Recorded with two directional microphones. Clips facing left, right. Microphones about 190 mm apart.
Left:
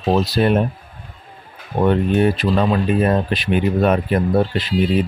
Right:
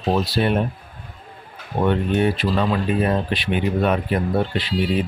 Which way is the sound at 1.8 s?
45° left (ahead or behind).